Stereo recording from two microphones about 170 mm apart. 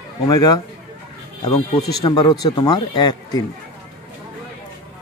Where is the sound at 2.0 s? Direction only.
25° left (ahead or behind).